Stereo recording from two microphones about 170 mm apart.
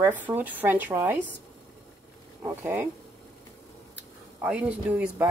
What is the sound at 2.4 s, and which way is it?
Speech, 15° right (ahead or behind).